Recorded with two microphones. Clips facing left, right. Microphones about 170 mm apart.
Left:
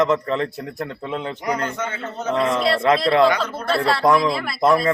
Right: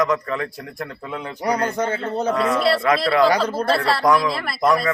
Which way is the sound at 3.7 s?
Centre (ahead or behind).